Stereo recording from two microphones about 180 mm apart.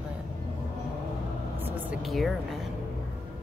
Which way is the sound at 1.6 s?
5° right (ahead or behind).